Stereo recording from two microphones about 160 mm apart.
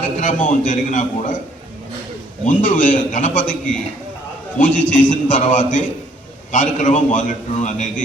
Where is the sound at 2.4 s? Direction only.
55° left (ahead or behind).